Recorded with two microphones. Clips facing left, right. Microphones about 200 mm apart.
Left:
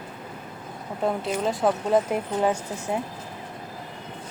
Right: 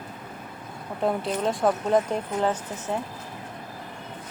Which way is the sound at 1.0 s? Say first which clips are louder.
Even; centre (ahead or behind).